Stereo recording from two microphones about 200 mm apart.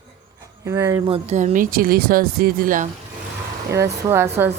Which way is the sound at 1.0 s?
30° right (ahead or behind).